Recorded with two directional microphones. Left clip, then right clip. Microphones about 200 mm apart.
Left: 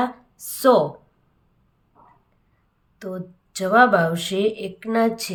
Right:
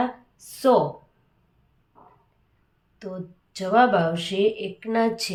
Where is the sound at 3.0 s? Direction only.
25° left (ahead or behind).